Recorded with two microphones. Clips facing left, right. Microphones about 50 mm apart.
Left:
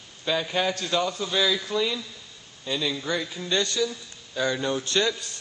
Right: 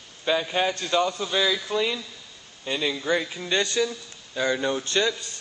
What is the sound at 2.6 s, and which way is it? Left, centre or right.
A man's voice, right.